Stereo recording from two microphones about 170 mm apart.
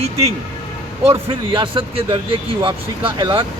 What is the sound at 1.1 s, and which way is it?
Speech, 30° right (ahead or behind).